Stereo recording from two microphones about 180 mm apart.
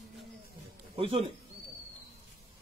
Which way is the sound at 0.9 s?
30° right (ahead or behind).